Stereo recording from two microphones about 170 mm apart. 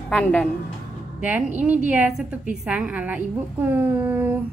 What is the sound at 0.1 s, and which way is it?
Speech, 10° left (ahead or behind).